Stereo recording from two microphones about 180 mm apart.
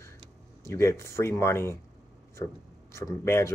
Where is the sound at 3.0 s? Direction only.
15° left (ahead or behind).